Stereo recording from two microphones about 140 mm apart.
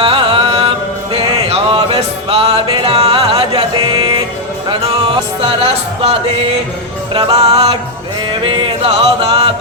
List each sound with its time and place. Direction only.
0.0 s music: 40° right (ahead or behind)
5.4 s music: 40° right (ahead or behind)